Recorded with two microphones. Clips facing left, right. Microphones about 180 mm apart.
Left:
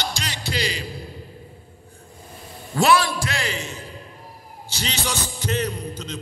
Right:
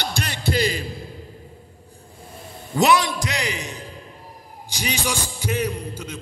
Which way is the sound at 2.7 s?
20° right (ahead or behind).